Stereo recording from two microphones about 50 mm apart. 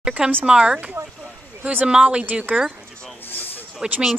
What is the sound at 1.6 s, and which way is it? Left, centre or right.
Speech, right.